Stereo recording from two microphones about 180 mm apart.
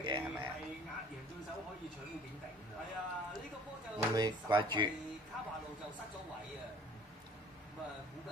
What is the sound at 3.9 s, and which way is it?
Speech, 25° right (ahead or behind).